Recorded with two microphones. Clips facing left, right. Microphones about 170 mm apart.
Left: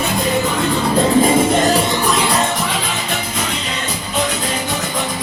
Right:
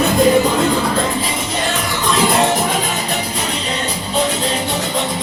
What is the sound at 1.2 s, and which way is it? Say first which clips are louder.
Music: left 8 dB; 50° left (ahead or behind).